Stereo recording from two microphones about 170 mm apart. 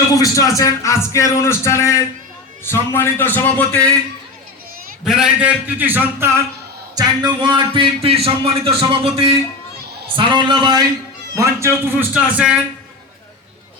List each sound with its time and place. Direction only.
0.1 s speech: 20° left (ahead or behind)
5.0 s a man's voice: 5° right (ahead or behind)